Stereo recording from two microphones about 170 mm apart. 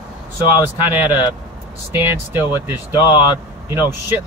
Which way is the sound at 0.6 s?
10° right (ahead or behind).